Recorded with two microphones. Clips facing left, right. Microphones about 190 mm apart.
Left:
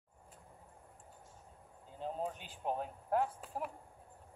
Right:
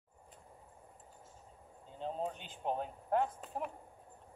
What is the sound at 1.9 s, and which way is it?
Speech, 5° left (ahead or behind).